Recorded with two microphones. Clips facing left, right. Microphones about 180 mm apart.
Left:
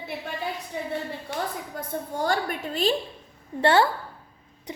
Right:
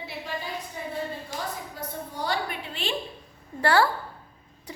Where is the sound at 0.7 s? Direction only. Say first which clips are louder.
Left 4 dB; 75° left (ahead or behind).